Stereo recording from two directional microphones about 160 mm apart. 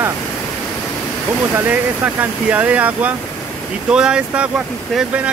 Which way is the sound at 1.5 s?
10° right (ahead or behind).